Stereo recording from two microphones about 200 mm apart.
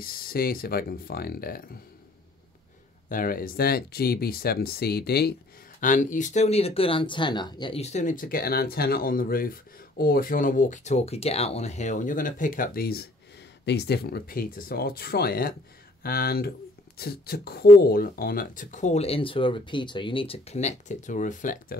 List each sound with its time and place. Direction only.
0.0 s speech: 45° left (ahead or behind)
3.1 s speech: 45° left (ahead or behind)
5.8 s speech: 40° left (ahead or behind)